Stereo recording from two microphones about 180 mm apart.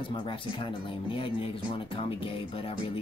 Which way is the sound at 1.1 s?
30° left (ahead or behind).